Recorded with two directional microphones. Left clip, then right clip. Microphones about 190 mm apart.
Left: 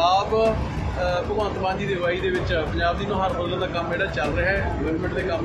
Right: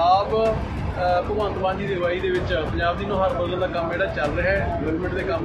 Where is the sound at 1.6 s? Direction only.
10° left (ahead or behind).